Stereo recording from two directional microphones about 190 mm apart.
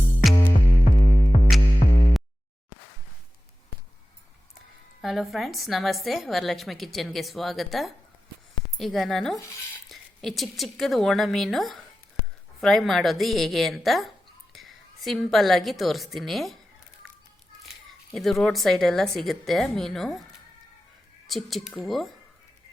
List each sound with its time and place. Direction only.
0.9 s music: 40° left (ahead or behind)
5.0 s a woman's voice: centre (ahead or behind)
18.1 s a woman's voice: centre (ahead or behind)
21.2 s a woman's voice: centre (ahead or behind)